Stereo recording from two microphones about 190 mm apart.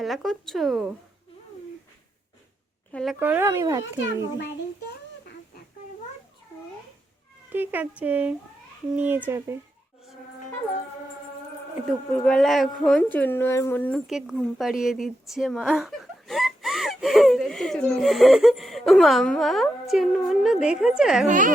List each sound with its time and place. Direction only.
0.0 s a woman's voice: centre (ahead or behind)
2.9 s a woman's voice: centre (ahead or behind)
3.2 s speech: 10° right (ahead or behind)
7.5 s speech: 10° right (ahead or behind)
11.9 s a woman's voice: 5° left (ahead or behind)
14.1 s a woman's voice: centre (ahead or behind)
21.2 s a woman's voice: 45° right (ahead or behind)